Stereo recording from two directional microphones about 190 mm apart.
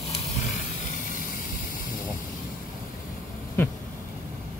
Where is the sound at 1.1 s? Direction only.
45° left (ahead or behind).